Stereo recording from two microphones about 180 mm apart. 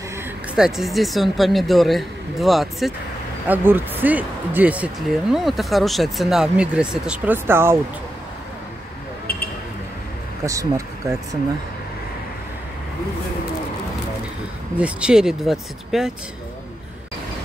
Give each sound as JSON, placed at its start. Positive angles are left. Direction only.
{"t": 0.6, "sound": "a woman's voice", "side_deg": 0}
{"t": 10.4, "sound": "speech", "side_deg": -15}
{"t": 14.8, "sound": "a woman's voice", "side_deg": -5}